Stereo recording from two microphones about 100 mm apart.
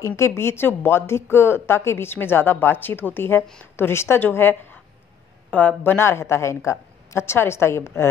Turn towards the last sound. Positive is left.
turn(degrees=25)  # may be behind; listen again after turning